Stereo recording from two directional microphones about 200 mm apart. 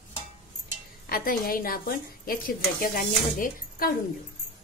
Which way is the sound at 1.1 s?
45° left (ahead or behind).